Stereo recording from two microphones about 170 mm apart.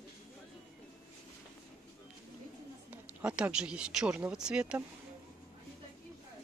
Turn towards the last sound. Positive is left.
turn(degrees=-5)  # may be behind; listen again after turning